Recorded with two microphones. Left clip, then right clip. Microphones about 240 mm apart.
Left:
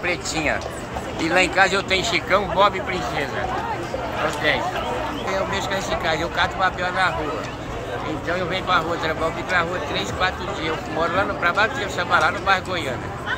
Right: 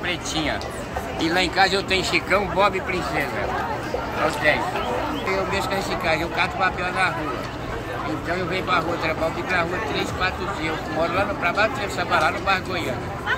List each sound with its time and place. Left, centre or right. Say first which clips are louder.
0.1 s speech: left 2 dB; left; by 3.0 s centre
5.3 s speech: even; centre
8.6 s speech: left 1 dB; centre